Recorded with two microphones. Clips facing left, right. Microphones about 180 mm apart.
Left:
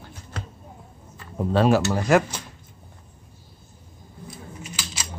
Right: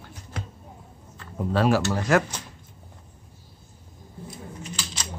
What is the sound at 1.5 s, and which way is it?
Speech, 25° left (ahead or behind).